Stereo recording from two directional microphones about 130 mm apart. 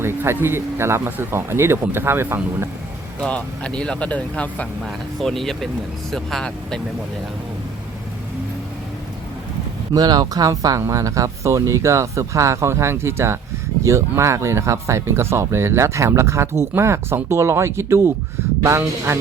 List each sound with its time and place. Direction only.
0.0 s speech: 15° right (ahead or behind)
3.2 s speech: 10° left (ahead or behind)
9.9 s speech: 30° right (ahead or behind)